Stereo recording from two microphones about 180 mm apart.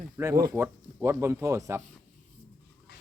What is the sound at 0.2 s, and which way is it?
Speech, 15° right (ahead or behind).